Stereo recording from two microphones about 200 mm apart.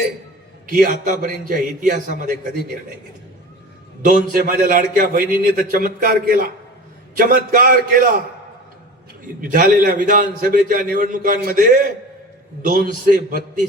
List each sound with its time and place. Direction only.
0.7 s a man's voice: 45° right (ahead or behind)
4.0 s a man's voice: 45° right (ahead or behind)
9.4 s a man's voice: 45° right (ahead or behind)